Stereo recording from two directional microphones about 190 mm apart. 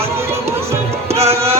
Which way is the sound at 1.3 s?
15° right (ahead or behind).